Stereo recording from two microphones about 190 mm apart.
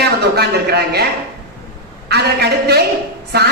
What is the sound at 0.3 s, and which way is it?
Speech, 60° right (ahead or behind).